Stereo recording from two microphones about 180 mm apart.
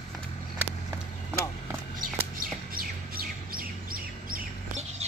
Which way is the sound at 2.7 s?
55° right (ahead or behind).